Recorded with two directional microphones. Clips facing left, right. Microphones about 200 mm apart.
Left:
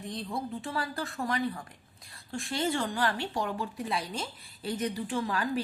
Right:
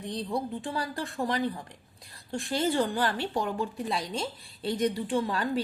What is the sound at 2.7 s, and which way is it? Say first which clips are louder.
A woman's voice: right 3 dB; 35° right (ahead or behind).